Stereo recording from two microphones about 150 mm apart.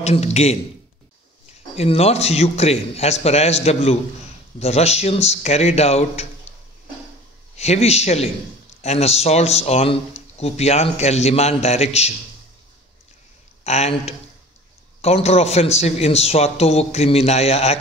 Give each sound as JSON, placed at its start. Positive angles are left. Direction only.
{"t": 0.0, "sound": "speech", "side_deg": 45}
{"t": 1.8, "sound": "speech", "side_deg": 45}
{"t": 7.5, "sound": "speech", "side_deg": 45}
{"t": 13.7, "sound": "speech", "side_deg": 45}